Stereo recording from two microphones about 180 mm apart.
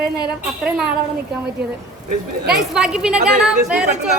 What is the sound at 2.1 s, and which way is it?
Speech, 60° right (ahead or behind).